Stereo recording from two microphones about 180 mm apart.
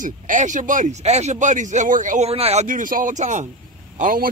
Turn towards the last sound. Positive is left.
turn(degrees=-50)  # may be behind; listen again after turning